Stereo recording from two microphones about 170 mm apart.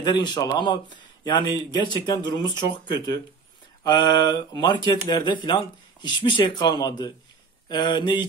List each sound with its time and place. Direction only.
0.0 s speech: 25° left (ahead or behind)